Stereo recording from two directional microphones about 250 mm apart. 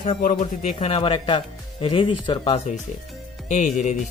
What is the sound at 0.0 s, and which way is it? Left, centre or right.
Speech, left.